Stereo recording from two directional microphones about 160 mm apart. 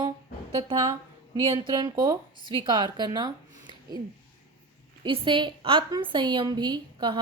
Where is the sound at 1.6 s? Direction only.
25° right (ahead or behind).